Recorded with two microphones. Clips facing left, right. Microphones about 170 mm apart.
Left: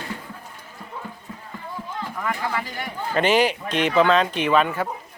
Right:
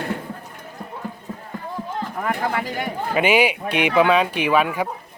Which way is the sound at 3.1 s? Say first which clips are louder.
Right 1 dB; 10° right (ahead or behind).